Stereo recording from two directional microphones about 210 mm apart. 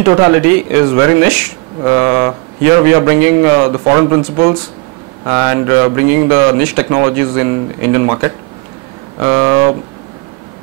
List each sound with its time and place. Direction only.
0.0 s speech: 20° right (ahead or behind)